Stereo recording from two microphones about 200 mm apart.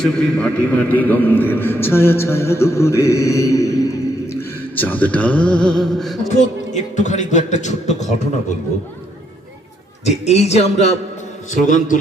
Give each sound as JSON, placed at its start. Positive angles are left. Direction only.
{"t": 0.0, "sound": "a man's voice", "side_deg": 5}
{"t": 6.3, "sound": "a man's voice", "side_deg": 35}
{"t": 10.1, "sound": "a man's voice", "side_deg": 35}